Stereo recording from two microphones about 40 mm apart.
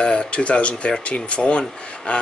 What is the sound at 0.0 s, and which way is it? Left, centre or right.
Speech, left.